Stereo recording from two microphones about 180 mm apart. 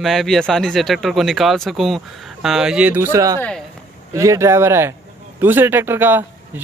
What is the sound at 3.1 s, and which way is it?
Speech, 20° right (ahead or behind).